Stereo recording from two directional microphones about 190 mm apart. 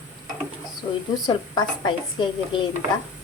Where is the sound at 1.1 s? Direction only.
20° left (ahead or behind).